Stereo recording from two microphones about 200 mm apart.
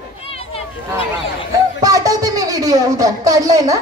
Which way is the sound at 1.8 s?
15° right (ahead or behind).